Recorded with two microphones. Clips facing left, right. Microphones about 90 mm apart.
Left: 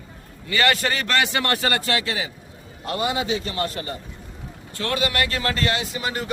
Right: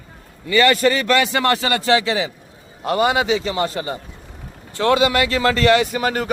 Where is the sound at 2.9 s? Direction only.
65° right (ahead or behind); by 3.6 s 90° right.